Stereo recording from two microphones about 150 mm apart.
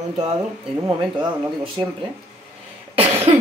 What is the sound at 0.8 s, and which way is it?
Speech, 30° right (ahead or behind).